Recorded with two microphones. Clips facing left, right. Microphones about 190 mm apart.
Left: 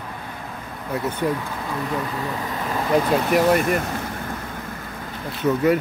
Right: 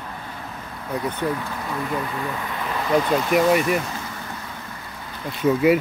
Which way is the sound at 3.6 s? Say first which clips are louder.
Even; 55° left (ahead or behind).